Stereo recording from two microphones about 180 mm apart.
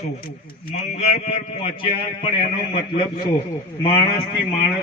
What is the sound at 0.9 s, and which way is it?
A man's voice, 35° left (ahead or behind).